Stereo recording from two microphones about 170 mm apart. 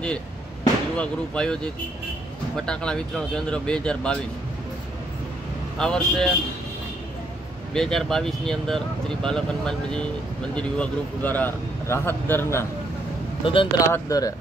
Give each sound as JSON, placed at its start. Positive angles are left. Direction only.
{"t": 0.9, "sound": "speech", "side_deg": 5}
{"t": 5.8, "sound": "speech", "side_deg": 5}
{"t": 7.7, "sound": "speech", "side_deg": 5}
{"t": 13.4, "sound": "speech", "side_deg": 30}
{"t": 13.8, "sound": "speech", "side_deg": 20}